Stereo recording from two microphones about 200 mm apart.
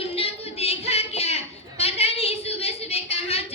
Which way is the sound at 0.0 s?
30° left (ahead or behind).